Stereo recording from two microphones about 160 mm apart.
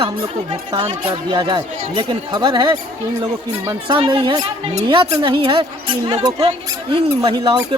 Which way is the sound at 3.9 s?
30° right (ahead or behind).